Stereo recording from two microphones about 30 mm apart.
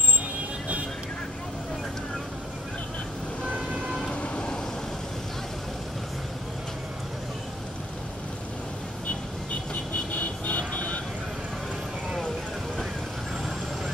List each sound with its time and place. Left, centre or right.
3.5 s vehicle: centre
4.1 s vehicle: left
10.1 s music: left